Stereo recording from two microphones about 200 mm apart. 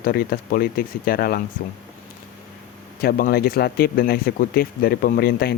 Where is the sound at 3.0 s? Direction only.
50° left (ahead or behind).